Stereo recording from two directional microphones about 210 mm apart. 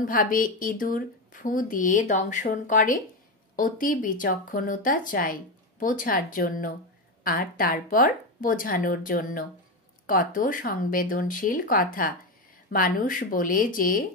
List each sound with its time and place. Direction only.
0.0 s speech: 40° left (ahead or behind)